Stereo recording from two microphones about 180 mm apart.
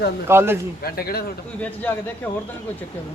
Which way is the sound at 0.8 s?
55° left (ahead or behind).